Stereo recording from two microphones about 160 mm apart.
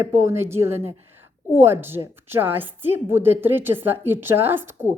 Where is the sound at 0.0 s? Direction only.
15° right (ahead or behind).